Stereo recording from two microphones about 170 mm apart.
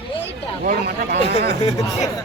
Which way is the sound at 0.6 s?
60° right (ahead or behind).